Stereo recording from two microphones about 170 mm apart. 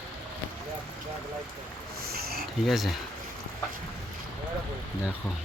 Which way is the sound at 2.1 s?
65° right (ahead or behind).